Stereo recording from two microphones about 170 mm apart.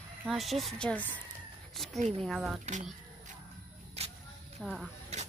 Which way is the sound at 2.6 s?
45° right (ahead or behind).